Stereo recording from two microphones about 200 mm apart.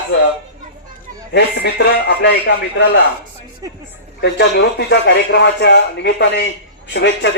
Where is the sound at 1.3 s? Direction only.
60° left (ahead or behind).